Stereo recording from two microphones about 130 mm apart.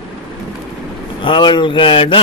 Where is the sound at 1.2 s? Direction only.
40° left (ahead or behind).